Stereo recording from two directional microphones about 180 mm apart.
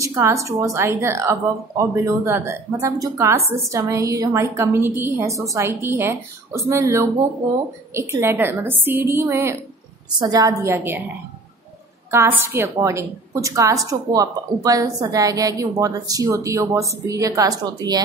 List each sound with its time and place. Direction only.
0.0 s a woman's voice: 15° right (ahead or behind)
12.1 s a woman's voice: 15° right (ahead or behind)